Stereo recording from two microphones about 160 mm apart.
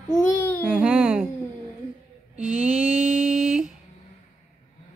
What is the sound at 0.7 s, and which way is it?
Speech, 5° right (ahead or behind).